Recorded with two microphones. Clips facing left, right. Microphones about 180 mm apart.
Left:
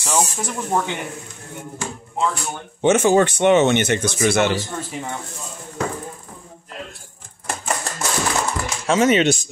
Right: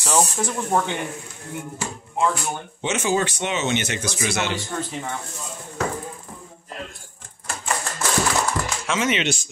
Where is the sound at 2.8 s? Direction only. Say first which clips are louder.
Left 8 dB; 50° left (ahead or behind).